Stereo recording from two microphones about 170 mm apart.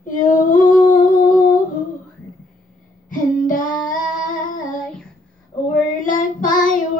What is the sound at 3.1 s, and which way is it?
Female singing, 50° left (ahead or behind).